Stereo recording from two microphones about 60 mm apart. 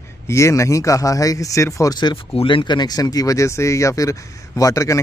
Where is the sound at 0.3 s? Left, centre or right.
Left.